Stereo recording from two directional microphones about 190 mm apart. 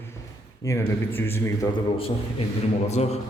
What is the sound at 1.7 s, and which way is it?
A man's voice, 30° left (ahead or behind).